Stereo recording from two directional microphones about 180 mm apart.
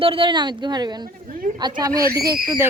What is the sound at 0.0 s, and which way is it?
Speech, 30° right (ahead or behind).